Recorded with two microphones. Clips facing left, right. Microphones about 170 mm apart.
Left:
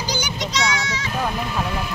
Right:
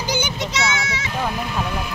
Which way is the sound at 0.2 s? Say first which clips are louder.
Right 1 dB; 25° right (ahead or behind).